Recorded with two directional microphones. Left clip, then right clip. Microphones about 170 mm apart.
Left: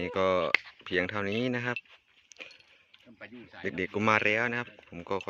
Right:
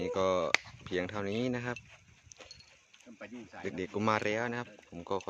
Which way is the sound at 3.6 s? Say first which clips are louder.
Left 4 dB; 5° left (ahead or behind).